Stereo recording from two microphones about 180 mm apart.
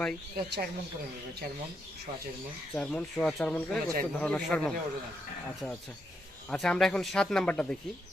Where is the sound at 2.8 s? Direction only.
5° left (ahead or behind).